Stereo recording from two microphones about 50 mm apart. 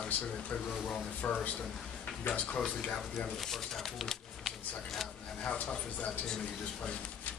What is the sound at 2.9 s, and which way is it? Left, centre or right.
Speech, centre.